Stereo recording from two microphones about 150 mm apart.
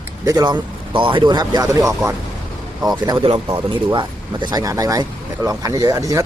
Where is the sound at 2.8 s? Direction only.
30° right (ahead or behind).